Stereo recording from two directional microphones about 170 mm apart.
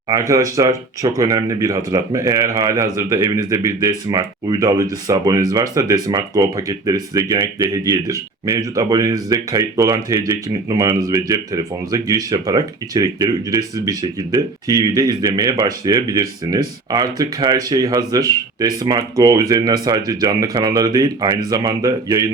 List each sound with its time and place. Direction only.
0.1 s speech: 20° right (ahead or behind)